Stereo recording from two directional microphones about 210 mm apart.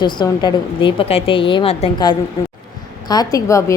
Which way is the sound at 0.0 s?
20° left (ahead or behind).